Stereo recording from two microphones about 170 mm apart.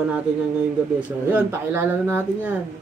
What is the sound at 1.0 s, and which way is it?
Speech, 10° right (ahead or behind).